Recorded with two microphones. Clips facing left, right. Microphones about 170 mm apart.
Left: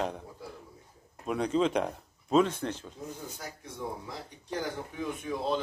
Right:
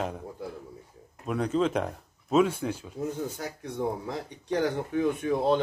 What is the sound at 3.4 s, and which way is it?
Speech, 70° right (ahead or behind).